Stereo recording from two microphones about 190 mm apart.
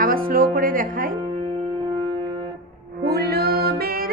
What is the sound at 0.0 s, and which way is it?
Speech, 50° right (ahead or behind).